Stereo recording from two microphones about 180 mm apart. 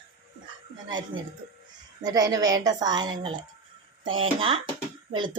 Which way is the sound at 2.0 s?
20° right (ahead or behind).